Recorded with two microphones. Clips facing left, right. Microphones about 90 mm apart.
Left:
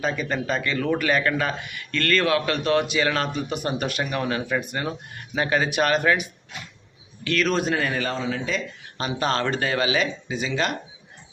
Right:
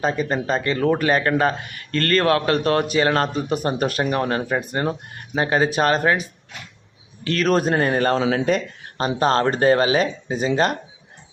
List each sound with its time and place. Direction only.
0.0 s speech: 35° right (ahead or behind)
7.3 s speech: 40° right (ahead or behind)
8.1 s speech: 65° right (ahead or behind)
9.0 s speech: 35° right (ahead or behind)